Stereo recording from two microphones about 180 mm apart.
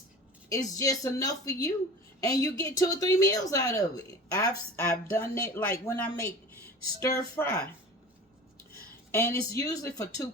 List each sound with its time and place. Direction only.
0.5 s speech: 20° left (ahead or behind)
8.7 s speech: 15° left (ahead or behind)